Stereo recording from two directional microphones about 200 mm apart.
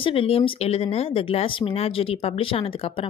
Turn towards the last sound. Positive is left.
turn(degrees=25)  # may be behind; listen again after turning